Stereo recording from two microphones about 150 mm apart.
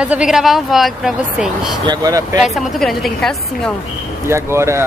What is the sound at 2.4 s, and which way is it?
A woman's voice, centre (ahead or behind).